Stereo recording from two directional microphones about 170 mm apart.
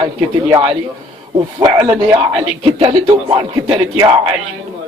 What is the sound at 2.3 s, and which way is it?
A man's voice, 35° right (ahead or behind).